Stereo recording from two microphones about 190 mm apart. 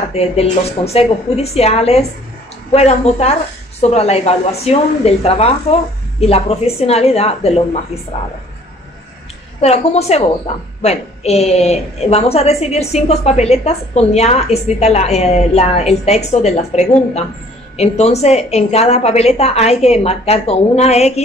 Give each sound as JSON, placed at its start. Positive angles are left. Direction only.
{"t": 0.1, "sound": "a woman's voice", "side_deg": 35}
{"t": 9.6, "sound": "a woman's voice", "side_deg": 35}